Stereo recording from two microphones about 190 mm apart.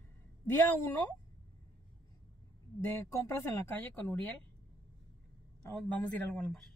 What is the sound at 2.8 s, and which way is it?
Speech, 10° left (ahead or behind).